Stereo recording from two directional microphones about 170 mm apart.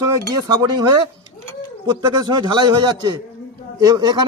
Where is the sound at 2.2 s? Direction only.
25° right (ahead or behind).